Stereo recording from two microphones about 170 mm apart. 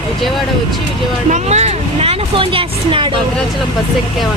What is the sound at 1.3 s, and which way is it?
Vehicle, 40° right (ahead or behind).